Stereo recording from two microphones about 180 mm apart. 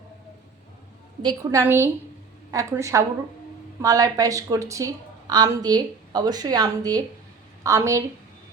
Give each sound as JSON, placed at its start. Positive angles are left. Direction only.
{"t": 1.2, "sound": "a woman's voice", "side_deg": -20}